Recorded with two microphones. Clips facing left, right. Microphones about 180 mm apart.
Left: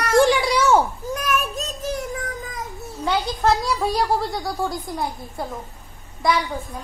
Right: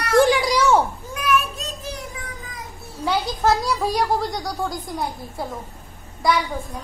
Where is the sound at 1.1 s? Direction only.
40° left (ahead or behind).